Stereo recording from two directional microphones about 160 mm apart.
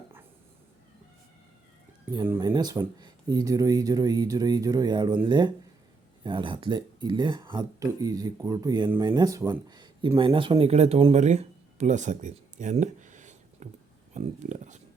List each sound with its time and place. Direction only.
2.1 s speech: 15° right (ahead or behind)
2.4 s speech: 25° right (ahead or behind); by 14.8 s 50° right (ahead or behind)